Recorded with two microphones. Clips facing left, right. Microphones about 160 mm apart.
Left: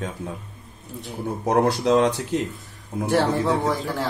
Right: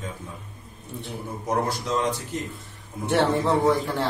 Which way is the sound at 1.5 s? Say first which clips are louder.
Left 7 dB; 70° left (ahead or behind).